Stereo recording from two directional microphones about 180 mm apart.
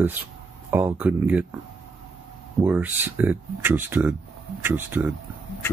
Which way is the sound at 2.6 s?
10° right (ahead or behind).